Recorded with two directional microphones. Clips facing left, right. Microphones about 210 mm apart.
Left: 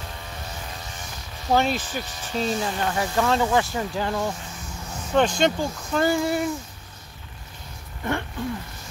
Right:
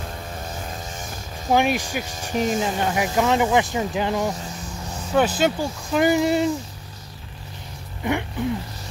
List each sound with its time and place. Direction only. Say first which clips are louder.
1.5 s speech: right 2 dB; 15° right (ahead or behind)
2.0 s speech: right 4 dB; 45° right (ahead or behind)
2.3 s speech: right 3 dB; 15° right (ahead or behind)
5.1 s speech: right 1 dB; 5° right (ahead or behind)
8.0 s speech: right 3 dB; 15° right (ahead or behind)